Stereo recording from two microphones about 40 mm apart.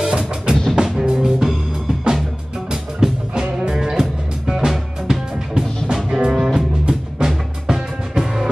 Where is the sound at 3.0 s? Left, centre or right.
Centre.